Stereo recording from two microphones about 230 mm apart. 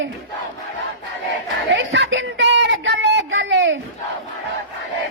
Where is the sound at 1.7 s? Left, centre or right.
Right.